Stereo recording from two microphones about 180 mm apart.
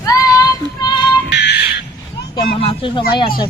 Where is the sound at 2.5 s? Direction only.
30° left (ahead or behind).